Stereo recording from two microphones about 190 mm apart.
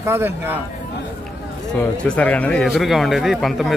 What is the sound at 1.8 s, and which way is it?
Speech, 5° left (ahead or behind).